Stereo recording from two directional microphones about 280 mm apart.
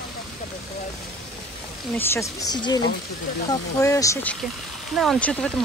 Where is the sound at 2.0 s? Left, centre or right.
Centre.